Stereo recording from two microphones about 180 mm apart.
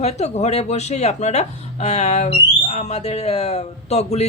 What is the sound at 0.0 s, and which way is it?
Speech, 35° left (ahead or behind).